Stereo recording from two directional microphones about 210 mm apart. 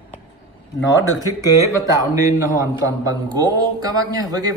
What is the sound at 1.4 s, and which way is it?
A man's voice, 15° right (ahead or behind).